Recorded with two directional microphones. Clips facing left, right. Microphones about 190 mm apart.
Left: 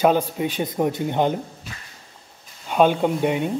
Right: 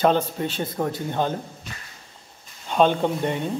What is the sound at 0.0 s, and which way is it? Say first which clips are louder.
Speech: left 2 dB; 10° left (ahead or behind).